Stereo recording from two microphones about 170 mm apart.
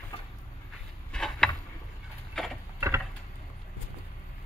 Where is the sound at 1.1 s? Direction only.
5° left (ahead or behind).